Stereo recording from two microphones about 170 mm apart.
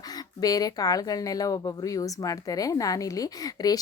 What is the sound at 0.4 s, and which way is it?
Speech, 20° left (ahead or behind).